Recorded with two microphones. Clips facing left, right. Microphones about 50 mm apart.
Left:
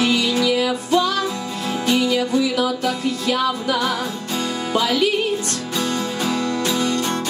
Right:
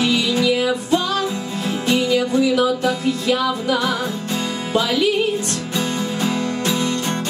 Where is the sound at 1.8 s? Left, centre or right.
Right.